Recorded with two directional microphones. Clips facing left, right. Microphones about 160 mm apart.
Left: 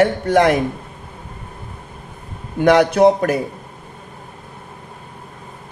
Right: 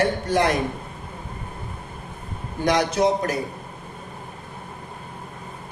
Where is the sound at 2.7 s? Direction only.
60° left (ahead or behind).